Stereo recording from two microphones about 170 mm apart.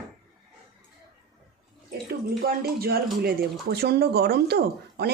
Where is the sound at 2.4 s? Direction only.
65° right (ahead or behind).